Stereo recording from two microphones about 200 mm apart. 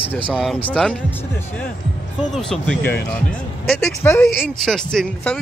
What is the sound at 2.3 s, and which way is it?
Speech, 5° left (ahead or behind).